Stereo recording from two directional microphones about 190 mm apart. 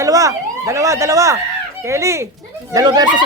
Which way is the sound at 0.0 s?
15° right (ahead or behind).